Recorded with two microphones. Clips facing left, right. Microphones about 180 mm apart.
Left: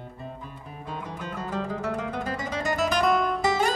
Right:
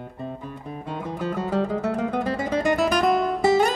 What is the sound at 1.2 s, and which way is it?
Music, 40° right (ahead or behind).